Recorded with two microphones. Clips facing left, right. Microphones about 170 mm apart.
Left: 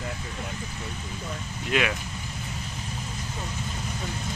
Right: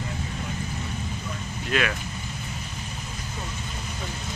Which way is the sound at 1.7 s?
15° left (ahead or behind).